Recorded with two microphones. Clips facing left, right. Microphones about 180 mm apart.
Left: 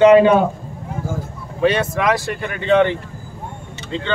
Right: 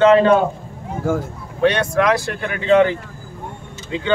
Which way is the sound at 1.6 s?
Centre (ahead or behind).